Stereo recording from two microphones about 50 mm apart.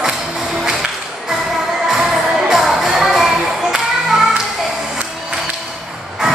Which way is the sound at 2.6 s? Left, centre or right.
Centre.